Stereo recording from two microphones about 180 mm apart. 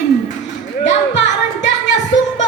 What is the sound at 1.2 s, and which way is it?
Music, 85° left.